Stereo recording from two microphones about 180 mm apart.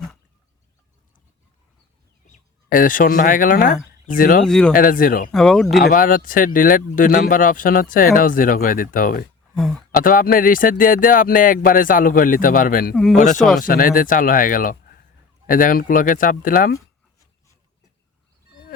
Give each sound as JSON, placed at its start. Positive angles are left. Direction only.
{"t": 2.2, "sound": "speech", "side_deg": 45}
{"t": 4.4, "sound": "speech", "side_deg": 5}
{"t": 4.7, "sound": "speech", "side_deg": 50}
{"t": 5.3, "sound": "speech", "side_deg": 5}
{"t": 5.9, "sound": "speech", "side_deg": 50}
{"t": 12.9, "sound": "speech", "side_deg": 0}
{"t": 13.1, "sound": "speech", "side_deg": 45}